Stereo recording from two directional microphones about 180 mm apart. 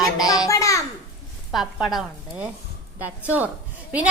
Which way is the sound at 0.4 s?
20° left (ahead or behind).